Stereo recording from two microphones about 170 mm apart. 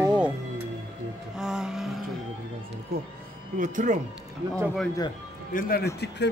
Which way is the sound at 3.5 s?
50° right (ahead or behind).